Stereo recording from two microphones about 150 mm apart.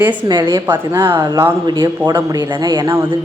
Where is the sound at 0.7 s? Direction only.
15° right (ahead or behind).